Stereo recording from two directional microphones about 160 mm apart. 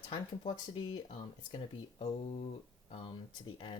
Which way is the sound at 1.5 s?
40° left (ahead or behind).